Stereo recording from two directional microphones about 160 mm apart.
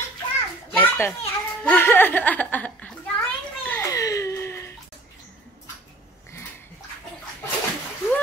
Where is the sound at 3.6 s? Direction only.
10° left (ahead or behind).